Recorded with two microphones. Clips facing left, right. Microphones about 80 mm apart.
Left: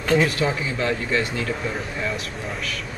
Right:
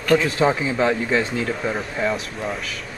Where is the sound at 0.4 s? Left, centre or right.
Right.